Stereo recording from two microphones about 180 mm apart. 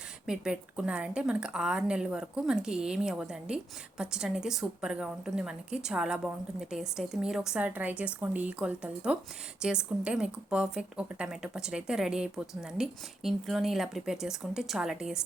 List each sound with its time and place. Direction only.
0.3 s speech: 5° right (ahead or behind)